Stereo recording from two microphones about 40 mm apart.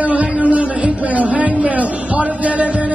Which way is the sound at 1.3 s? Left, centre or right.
Right.